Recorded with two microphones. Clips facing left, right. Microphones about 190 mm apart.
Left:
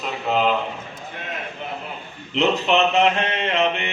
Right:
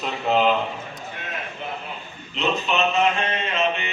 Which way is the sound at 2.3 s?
70° left (ahead or behind).